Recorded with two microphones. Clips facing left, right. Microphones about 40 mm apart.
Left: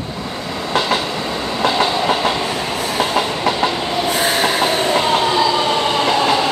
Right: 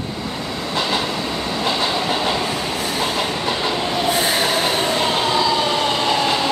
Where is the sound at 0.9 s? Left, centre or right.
Centre.